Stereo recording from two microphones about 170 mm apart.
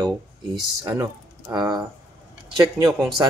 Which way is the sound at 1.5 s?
25° right (ahead or behind).